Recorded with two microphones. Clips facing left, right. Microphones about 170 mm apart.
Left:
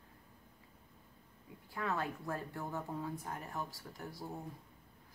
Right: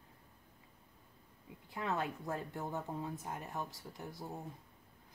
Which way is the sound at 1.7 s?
20° right (ahead or behind).